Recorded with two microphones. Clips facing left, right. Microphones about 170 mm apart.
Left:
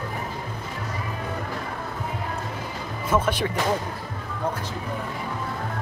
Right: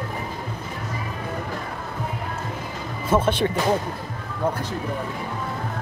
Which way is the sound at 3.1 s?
30° right (ahead or behind).